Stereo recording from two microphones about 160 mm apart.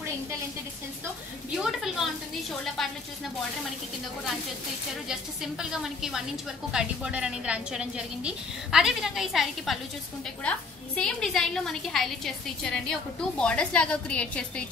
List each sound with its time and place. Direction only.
1.6 s a sound: centre (ahead or behind)
2.8 s a woman's voice: centre (ahead or behind)
5.0 s a woman's voice: 5° right (ahead or behind)